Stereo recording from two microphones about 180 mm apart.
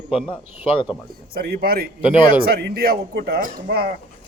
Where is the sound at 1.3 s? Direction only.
55° right (ahead or behind).